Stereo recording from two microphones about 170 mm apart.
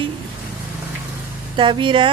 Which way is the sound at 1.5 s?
30° right (ahead or behind).